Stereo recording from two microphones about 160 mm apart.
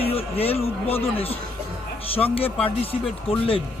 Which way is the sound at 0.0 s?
35° left (ahead or behind).